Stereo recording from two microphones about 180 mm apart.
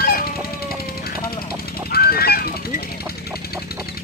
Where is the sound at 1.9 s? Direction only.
60° left (ahead or behind).